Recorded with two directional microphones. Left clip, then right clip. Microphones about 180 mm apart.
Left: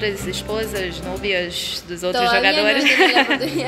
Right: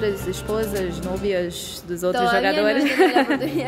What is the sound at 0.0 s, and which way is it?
A woman's voice, 35° right (ahead or behind).